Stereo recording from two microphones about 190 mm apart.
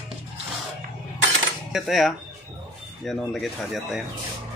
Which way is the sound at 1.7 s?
Centre (ahead or behind).